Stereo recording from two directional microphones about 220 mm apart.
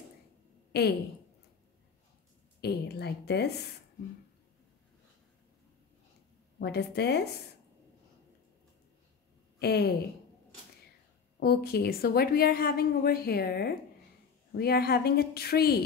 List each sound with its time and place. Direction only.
2.6 s a woman's voice: 45° left (ahead or behind)
6.6 s a woman's voice: 50° left (ahead or behind)
9.6 s speech: 45° left (ahead or behind)
11.3 s a woman's voice: 45° left (ahead or behind)